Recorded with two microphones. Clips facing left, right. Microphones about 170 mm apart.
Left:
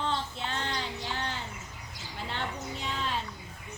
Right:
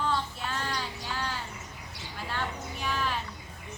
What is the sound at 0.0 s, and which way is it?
Child singing, 25° left (ahead or behind).